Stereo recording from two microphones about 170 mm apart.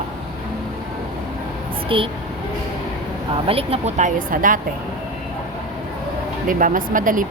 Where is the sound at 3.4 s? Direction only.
35° right (ahead or behind); by 4.5 s 50° right (ahead or behind).